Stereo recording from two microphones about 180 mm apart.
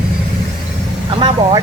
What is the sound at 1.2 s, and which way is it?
Speech, 25° right (ahead or behind).